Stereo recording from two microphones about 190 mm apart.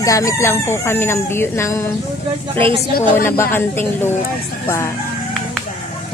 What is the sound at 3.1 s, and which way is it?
A woman's voice, 10° left (ahead or behind).